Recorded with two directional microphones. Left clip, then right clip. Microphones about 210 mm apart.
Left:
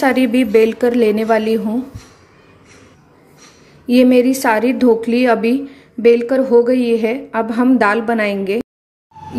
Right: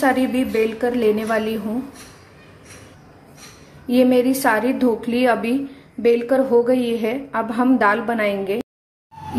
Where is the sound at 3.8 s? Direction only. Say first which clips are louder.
Left 4 dB; 35° left (ahead or behind).